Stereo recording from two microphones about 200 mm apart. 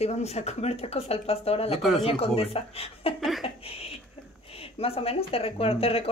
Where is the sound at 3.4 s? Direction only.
30° left (ahead or behind).